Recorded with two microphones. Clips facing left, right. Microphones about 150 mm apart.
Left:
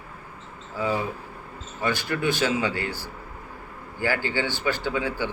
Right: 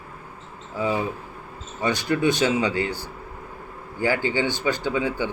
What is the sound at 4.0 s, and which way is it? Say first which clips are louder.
Speech: right 3 dB; 15° right (ahead or behind).